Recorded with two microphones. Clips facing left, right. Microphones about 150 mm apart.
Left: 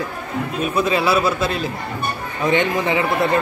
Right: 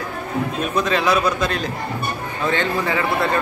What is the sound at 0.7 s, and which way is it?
A man's voice, 10° left (ahead or behind).